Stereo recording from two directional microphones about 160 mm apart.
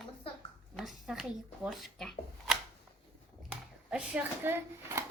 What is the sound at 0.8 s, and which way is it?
Speech, 5° right (ahead or behind).